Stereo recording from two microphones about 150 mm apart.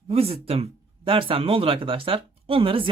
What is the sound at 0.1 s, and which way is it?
Speech, 40° right (ahead or behind).